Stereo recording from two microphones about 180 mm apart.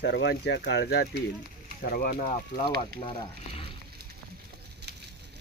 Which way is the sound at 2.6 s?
30° left (ahead or behind).